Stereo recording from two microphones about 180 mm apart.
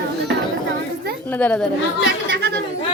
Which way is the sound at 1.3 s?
10° left (ahead or behind).